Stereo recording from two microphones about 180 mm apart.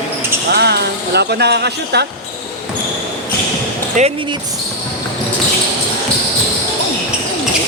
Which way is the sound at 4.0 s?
40° right (ahead or behind).